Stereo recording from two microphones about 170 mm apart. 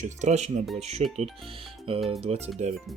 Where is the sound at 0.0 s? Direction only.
45° right (ahead or behind).